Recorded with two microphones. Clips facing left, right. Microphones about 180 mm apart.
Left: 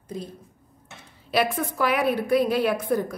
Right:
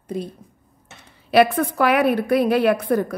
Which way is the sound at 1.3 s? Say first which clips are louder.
Right 8 dB; 65° right (ahead or behind).